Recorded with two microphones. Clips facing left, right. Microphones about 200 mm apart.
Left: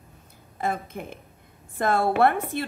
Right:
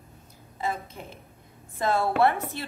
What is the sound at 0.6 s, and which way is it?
A woman's voice, 55° left (ahead or behind).